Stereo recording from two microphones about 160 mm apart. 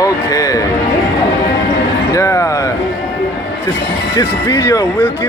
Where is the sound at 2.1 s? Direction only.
20° left (ahead or behind).